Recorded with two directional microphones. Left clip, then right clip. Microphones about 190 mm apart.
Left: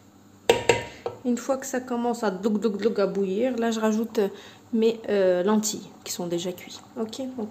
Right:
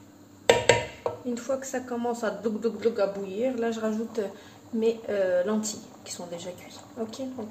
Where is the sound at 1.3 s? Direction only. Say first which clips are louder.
Left 6 dB; 65° left (ahead or behind).